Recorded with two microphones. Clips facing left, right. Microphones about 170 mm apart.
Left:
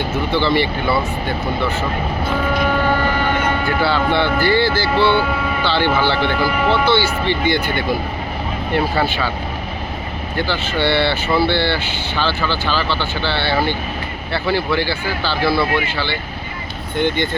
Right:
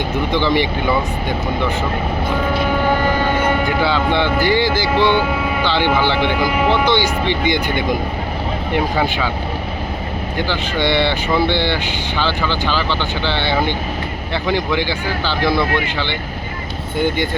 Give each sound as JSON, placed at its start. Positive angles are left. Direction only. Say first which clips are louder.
{"t": 0.3, "sound": "speech", "louder": "even", "side_deg": -15}
{"t": 3.6, "sound": "speech", "louder": "right 1 dB", "side_deg": -15}
{"t": 10.3, "sound": "speech", "louder": "left 1 dB", "side_deg": -15}
{"t": 17.0, "sound": "speech", "louder": "even", "side_deg": -10}